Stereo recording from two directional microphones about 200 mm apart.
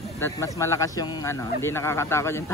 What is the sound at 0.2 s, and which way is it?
Speech, 15° left (ahead or behind).